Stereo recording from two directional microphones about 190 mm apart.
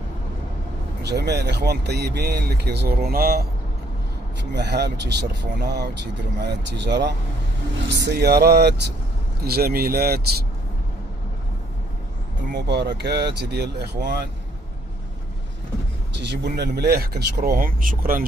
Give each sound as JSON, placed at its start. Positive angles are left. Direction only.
{"t": 1.0, "sound": "speech", "side_deg": -60}
{"t": 12.5, "sound": "speech", "side_deg": -60}
{"t": 16.2, "sound": "speech", "side_deg": -65}